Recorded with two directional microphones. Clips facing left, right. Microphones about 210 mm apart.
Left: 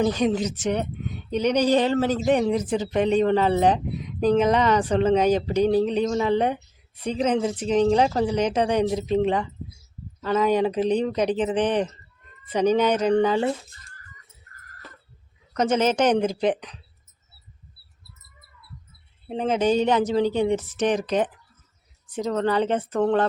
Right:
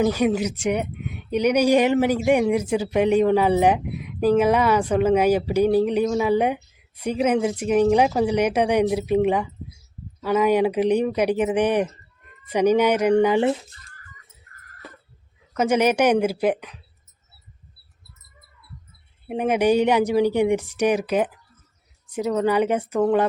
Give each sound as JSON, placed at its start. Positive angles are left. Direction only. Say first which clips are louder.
{"t": 0.0, "sound": "speech", "louder": "right 2 dB", "side_deg": -10}
{"t": 15.5, "sound": "speech", "louder": "right 2 dB", "side_deg": -10}
{"t": 19.3, "sound": "speech", "louder": "right 2 dB", "side_deg": -15}